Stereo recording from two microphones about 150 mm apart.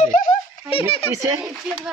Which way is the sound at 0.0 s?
60° left (ahead or behind).